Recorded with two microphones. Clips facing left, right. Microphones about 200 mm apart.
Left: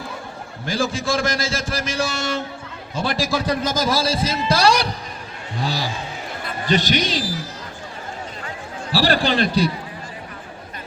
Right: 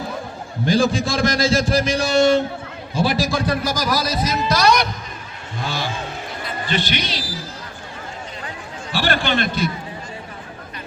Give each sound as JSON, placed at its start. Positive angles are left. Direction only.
{"t": 0.6, "sound": "a man's voice", "side_deg": -15}
{"t": 3.4, "sound": "a man's voice", "side_deg": 20}
{"t": 8.9, "sound": "a man's voice", "side_deg": 35}